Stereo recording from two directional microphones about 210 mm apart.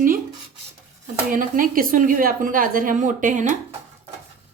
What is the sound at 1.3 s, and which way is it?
Speech, 40° right (ahead or behind).